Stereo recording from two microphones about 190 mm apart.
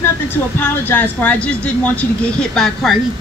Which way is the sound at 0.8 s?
10° left (ahead or behind).